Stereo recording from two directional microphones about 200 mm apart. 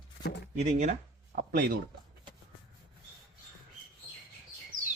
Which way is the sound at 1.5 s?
45° right (ahead or behind).